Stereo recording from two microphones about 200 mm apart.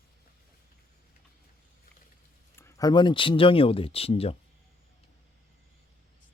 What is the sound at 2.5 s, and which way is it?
Speech, 15° left (ahead or behind).